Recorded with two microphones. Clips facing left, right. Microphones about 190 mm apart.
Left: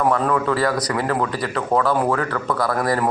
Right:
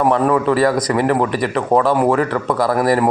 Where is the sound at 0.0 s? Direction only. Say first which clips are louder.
Right 4 dB; 20° right (ahead or behind).